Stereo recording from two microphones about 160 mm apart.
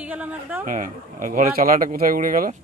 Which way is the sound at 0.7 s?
55° right (ahead or behind).